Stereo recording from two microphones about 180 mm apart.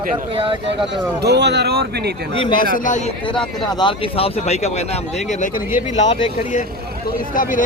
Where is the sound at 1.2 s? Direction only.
70° right (ahead or behind).